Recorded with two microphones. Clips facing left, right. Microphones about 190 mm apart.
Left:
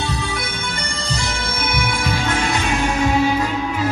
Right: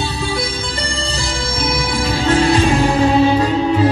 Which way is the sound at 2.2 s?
30° right (ahead or behind).